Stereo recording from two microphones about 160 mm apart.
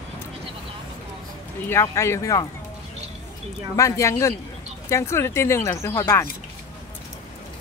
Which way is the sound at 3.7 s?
20° left (ahead or behind).